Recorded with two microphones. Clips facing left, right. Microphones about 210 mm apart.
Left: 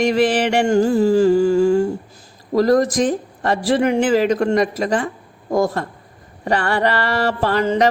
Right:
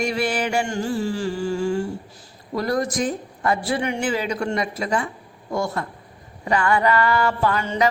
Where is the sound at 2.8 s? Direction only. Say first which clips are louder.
Left 6 dB; 90° left.